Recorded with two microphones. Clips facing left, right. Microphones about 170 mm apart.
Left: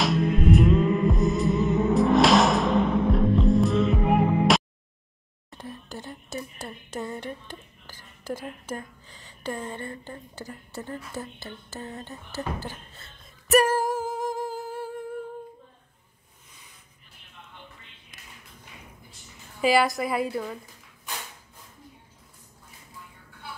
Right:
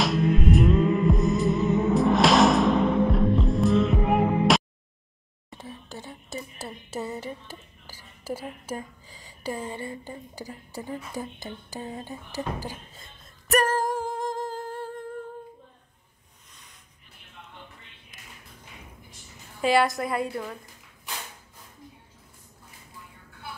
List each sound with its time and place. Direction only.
0.0 s music: centre (ahead or behind)
5.5 s whispering: centre (ahead or behind)
11.0 s speech: 15° right (ahead or behind)
13.2 s music: 5° left (ahead or behind)
19.6 s a woman's voice: centre (ahead or behind)